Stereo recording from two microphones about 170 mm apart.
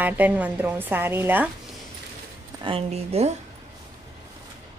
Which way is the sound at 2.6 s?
35° right (ahead or behind).